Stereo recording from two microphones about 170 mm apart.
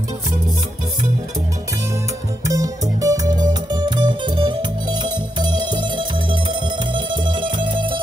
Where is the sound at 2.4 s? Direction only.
20° right (ahead or behind).